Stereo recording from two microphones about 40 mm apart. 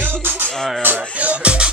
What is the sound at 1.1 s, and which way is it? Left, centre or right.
Music, right.